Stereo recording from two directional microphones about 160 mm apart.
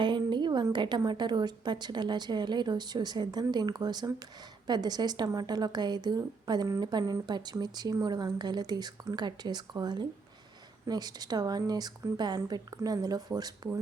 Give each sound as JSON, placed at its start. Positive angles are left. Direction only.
{"t": 0.0, "sound": "a woman's voice", "side_deg": -30}